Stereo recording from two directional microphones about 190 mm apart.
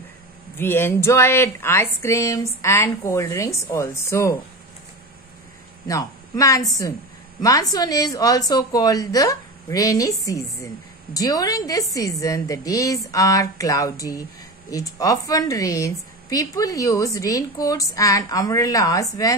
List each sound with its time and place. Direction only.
0.6 s a woman's voice: 10° left (ahead or behind)
5.9 s a woman's voice: 20° left (ahead or behind)